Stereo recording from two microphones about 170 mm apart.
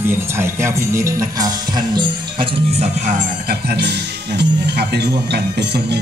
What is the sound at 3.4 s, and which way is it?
Speech, 75° right (ahead or behind).